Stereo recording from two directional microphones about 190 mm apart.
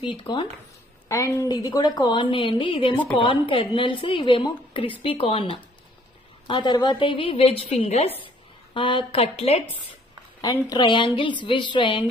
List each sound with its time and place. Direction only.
0.0 s a woman's voice: 25° left (ahead or behind)
1.0 s a woman's voice: 15° left (ahead or behind)
10.4 s a woman's voice: 20° left (ahead or behind)